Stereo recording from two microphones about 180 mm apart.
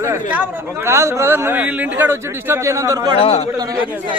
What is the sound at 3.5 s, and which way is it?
Speech, 20° right (ahead or behind).